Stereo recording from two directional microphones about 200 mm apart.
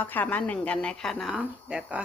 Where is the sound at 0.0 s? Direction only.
10° left (ahead or behind).